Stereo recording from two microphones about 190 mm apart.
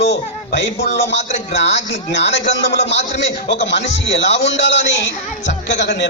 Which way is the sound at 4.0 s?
70° left (ahead or behind).